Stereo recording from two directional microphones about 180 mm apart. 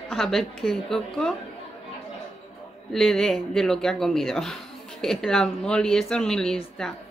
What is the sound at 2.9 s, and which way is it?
Speech, centre (ahead or behind).